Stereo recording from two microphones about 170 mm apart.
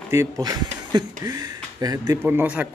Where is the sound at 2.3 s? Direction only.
10° right (ahead or behind).